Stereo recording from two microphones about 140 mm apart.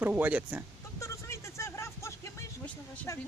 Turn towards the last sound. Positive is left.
turn(degrees=20)  # may be behind; listen again after turning